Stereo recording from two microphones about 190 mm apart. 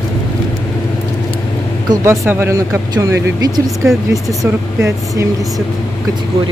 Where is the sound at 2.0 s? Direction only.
15° right (ahead or behind).